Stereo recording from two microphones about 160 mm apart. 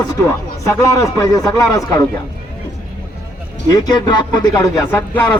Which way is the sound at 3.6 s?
25° left (ahead or behind).